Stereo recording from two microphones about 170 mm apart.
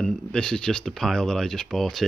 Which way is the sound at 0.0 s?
5° left (ahead or behind).